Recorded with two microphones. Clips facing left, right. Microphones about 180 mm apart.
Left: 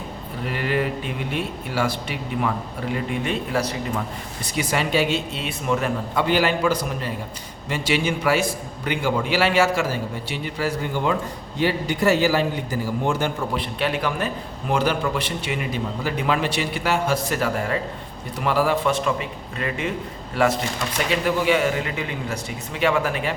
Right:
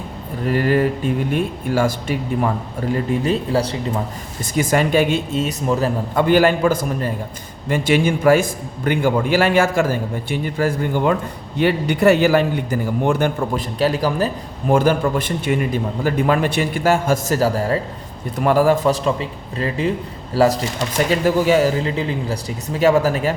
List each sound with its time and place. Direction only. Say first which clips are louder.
0.4 s speech: right 7 dB; 40° right (ahead or behind)
4.4 s speech: right 7 dB; 45° right (ahead or behind)
6.1 s speech: right 7 dB; 50° right (ahead or behind)
11.5 s a man's voice: right 5 dB; 60° right (ahead or behind); by 14.3 s 35° right (ahead or behind)
14.7 s speech: right 6 dB; 50° right (ahead or behind)